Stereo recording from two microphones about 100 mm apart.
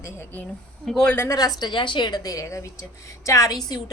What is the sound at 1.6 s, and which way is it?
A woman's voice, 50° left (ahead or behind).